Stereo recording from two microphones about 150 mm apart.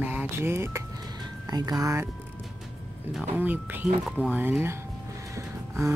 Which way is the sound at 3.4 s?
10° right (ahead or behind).